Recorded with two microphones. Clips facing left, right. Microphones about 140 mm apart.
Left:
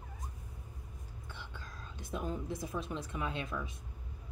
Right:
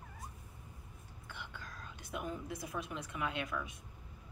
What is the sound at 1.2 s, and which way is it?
Whispering, 25° left (ahead or behind).